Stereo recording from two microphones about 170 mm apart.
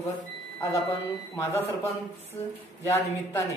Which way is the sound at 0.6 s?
15° left (ahead or behind).